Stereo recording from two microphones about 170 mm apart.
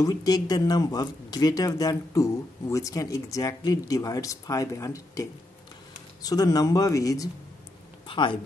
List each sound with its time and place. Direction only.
0.0 s speech: 20° left (ahead or behind)